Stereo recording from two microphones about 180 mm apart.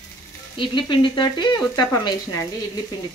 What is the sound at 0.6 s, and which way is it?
Frying, 25° left (ahead or behind).